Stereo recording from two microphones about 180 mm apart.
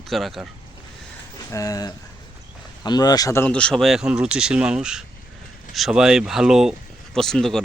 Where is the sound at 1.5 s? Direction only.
20° left (ahead or behind).